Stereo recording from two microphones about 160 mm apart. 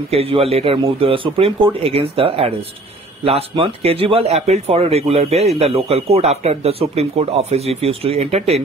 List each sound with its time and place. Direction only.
0.1 s speech: 35° right (ahead or behind)